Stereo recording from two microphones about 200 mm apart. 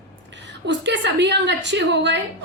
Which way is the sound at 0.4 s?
60° right (ahead or behind).